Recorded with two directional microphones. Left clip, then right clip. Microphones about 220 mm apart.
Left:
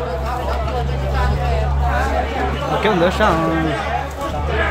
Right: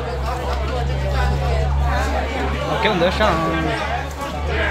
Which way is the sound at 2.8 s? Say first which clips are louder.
Left 2 dB; 25° left (ahead or behind).